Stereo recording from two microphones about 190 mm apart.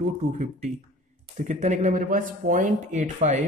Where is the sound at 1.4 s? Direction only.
40° right (ahead or behind).